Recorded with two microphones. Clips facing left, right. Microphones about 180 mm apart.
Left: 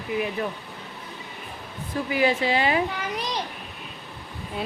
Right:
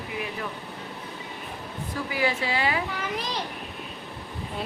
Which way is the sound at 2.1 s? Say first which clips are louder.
Left 5 dB; 20° left (ahead or behind).